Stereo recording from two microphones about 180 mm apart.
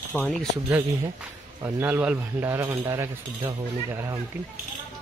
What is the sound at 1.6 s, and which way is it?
Speech, 10° right (ahead or behind).